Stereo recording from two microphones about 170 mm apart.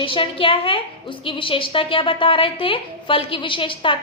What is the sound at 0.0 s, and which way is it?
A woman's voice, 30° left (ahead or behind).